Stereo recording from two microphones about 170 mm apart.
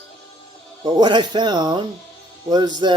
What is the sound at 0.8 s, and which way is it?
Speech, 25° right (ahead or behind).